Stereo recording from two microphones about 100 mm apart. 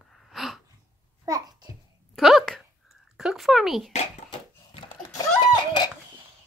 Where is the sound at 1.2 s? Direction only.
40° right (ahead or behind).